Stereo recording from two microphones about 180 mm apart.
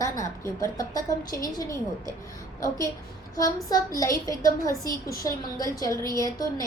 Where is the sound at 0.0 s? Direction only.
15° left (ahead or behind).